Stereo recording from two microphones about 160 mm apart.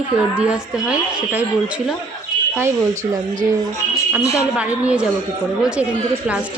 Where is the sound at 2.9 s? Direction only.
50° right (ahead or behind).